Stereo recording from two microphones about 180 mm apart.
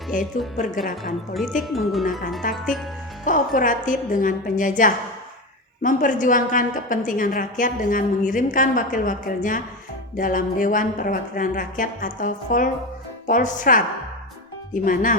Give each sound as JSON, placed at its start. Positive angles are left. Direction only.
{"t": 0.1, "sound": "a woman's voice", "side_deg": 45}
{"t": 1.3, "sound": "speech", "side_deg": 0}
{"t": 3.2, "sound": "a woman's voice", "side_deg": 45}
{"t": 14.8, "sound": "a woman's voice", "side_deg": 50}